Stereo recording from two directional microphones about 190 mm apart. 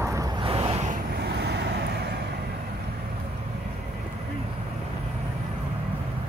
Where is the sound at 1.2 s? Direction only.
60° right (ahead or behind).